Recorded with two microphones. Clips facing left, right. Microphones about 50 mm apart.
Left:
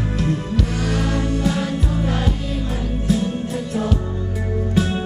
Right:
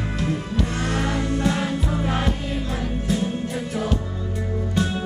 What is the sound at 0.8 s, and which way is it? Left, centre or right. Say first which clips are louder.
Music: left 2 dB; centre.